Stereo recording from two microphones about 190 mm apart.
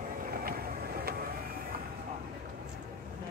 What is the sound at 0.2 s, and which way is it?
Vehicle, 50° right (ahead or behind).